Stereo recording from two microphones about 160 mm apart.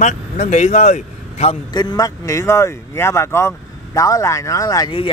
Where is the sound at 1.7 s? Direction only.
25° left (ahead or behind).